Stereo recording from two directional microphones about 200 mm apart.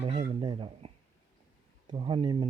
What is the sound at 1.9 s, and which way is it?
Speech, 25° right (ahead or behind).